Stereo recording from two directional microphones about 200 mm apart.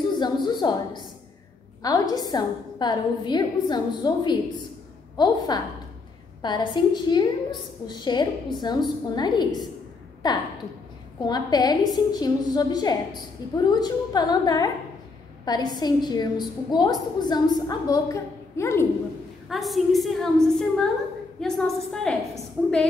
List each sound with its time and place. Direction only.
0.2 s a woman's voice: 20° left (ahead or behind)
19.5 s a woman's voice: centre (ahead or behind)